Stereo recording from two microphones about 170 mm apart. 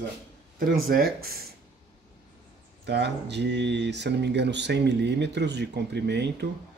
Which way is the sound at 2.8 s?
85° right.